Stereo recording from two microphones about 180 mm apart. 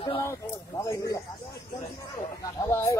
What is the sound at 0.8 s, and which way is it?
Speech, 15° left (ahead or behind).